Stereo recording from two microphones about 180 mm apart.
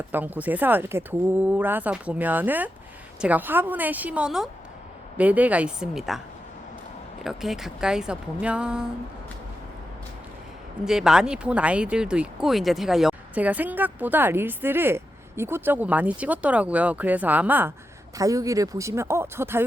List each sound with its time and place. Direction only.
0.1 s speech: 10° right (ahead or behind)
7.3 s speech: centre (ahead or behind)
10.8 s speech: 5° right (ahead or behind)